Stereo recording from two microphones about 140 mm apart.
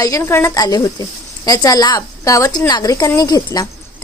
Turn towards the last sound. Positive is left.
turn(degrees=30)  # may be behind; listen again after turning